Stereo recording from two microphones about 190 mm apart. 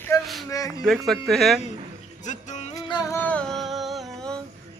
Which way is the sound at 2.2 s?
40° left (ahead or behind).